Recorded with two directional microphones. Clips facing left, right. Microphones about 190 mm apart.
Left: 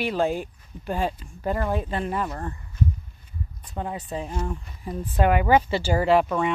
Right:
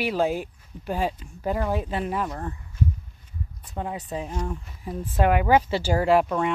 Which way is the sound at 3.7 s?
5° right (ahead or behind).